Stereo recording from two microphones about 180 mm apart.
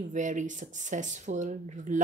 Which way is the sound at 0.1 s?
45° right (ahead or behind).